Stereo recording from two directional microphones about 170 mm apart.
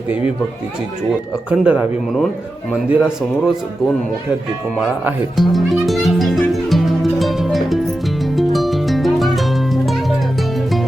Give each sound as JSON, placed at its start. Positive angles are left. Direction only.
{"t": 1.5, "sound": "a man's voice", "side_deg": -5}
{"t": 4.8, "sound": "music", "side_deg": 0}